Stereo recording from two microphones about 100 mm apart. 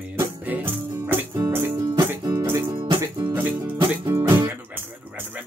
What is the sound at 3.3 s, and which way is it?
Music, 20° right (ahead or behind).